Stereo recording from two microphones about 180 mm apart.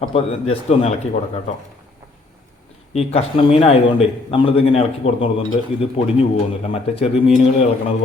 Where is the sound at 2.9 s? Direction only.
35° left (ahead or behind).